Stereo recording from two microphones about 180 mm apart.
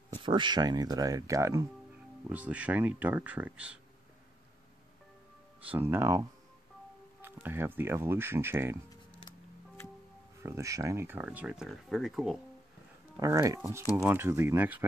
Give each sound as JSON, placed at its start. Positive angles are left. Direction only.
{"t": 0.1, "sound": "speech", "side_deg": -25}
{"t": 5.7, "sound": "speech", "side_deg": -10}
{"t": 7.4, "sound": "speech", "side_deg": -10}
{"t": 10.4, "sound": "speech", "side_deg": -15}
{"t": 13.2, "sound": "speech", "side_deg": -20}